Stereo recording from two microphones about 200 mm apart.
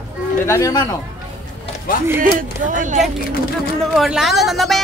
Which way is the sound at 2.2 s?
40° right (ahead or behind).